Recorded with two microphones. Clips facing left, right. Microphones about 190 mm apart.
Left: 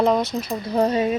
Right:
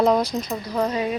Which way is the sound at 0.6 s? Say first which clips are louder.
Left 6 dB; 30° left (ahead or behind).